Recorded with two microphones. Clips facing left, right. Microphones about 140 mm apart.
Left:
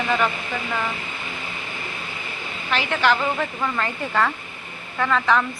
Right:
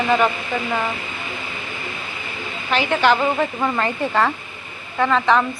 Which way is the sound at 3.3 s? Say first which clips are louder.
Right 4 dB; 30° right (ahead or behind).